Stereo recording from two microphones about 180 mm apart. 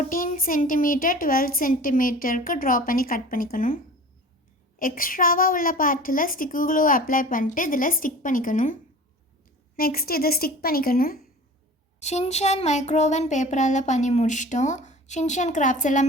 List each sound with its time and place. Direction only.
0.0 s a woman's voice: 50° left (ahead or behind)
4.8 s a woman's voice: 50° left (ahead or behind)
11.9 s a child's voice: 40° left (ahead or behind)